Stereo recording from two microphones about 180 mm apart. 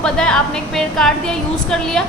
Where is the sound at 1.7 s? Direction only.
Centre (ahead or behind).